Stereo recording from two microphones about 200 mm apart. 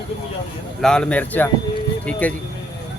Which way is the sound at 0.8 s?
5° left (ahead or behind).